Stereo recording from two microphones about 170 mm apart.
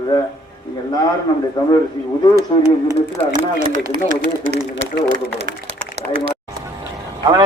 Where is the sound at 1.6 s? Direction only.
25° left (ahead or behind).